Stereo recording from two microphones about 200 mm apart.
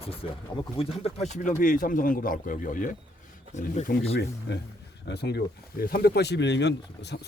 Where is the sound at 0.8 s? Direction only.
30° left (ahead or behind).